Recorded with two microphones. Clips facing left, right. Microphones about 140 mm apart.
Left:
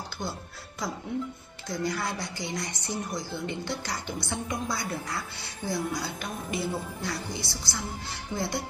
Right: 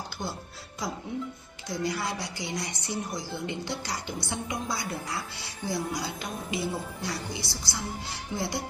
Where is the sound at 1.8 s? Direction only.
20° right (ahead or behind).